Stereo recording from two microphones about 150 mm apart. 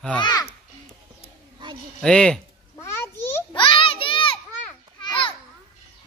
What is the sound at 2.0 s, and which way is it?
Speech, 5° left (ahead or behind).